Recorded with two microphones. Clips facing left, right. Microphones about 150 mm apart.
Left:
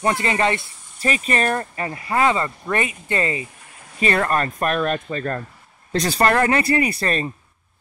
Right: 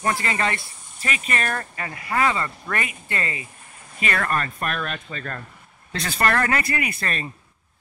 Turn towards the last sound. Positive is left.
turn(degrees=35)  # may be behind; listen again after turning